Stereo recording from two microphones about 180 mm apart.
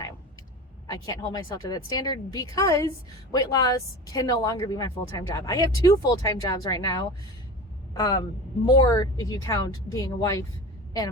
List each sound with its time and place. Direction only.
0.9 s a woman's voice: 20° left (ahead or behind)